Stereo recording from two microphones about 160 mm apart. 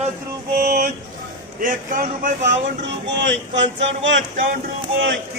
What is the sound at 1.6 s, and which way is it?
Speech, 60° right (ahead or behind).